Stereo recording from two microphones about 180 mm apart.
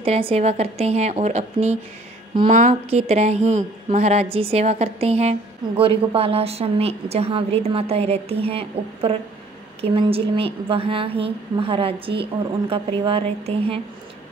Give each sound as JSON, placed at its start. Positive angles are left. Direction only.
{"t": 0.0, "sound": "a woman's voice", "side_deg": -30}